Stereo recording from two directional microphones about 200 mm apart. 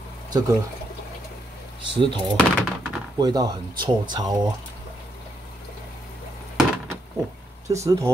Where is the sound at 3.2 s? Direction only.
20° right (ahead or behind).